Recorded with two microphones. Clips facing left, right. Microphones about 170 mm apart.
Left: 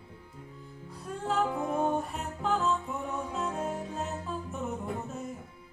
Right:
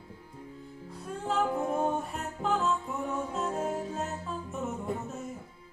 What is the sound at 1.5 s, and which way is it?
Music, 35° right (ahead or behind).